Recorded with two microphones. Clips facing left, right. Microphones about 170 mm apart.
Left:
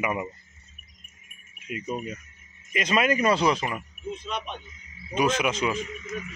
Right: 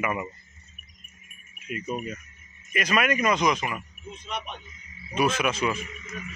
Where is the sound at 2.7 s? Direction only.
25° left (ahead or behind).